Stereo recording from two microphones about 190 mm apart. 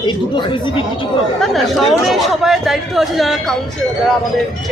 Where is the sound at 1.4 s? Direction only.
Centre (ahead or behind).